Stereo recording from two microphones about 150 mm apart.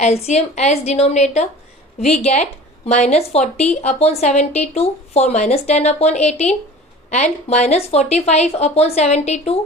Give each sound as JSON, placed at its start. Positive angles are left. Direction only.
{"t": 0.0, "sound": "a woman's voice", "side_deg": 45}